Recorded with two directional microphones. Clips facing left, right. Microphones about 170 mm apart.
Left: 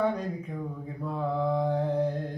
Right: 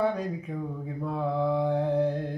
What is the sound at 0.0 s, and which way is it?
Speech, 5° right (ahead or behind).